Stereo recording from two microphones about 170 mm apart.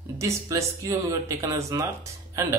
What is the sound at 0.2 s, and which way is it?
A man's voice, 15° right (ahead or behind).